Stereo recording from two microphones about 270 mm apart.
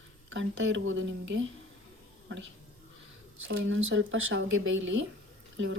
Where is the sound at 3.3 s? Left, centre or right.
Right.